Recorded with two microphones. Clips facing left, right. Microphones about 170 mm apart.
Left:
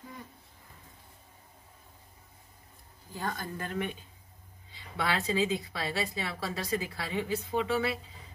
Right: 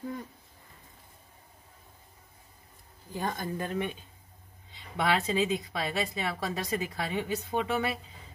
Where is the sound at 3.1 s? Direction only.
20° right (ahead or behind).